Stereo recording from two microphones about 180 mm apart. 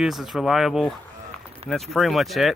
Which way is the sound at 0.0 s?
Centre (ahead or behind).